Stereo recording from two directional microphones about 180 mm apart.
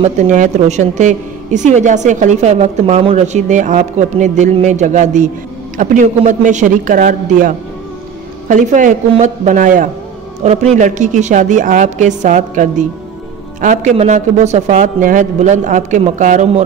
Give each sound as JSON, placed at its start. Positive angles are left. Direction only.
{"t": 0.0, "sound": "a woman's voice", "side_deg": -40}